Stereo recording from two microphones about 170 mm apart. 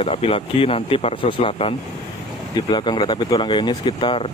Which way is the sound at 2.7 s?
25° left (ahead or behind).